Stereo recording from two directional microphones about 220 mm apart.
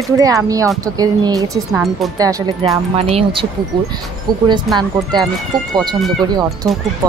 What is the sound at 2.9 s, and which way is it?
Speech, 25° right (ahead or behind).